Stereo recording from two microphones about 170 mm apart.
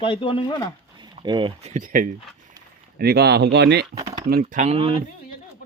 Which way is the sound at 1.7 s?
50° right (ahead or behind).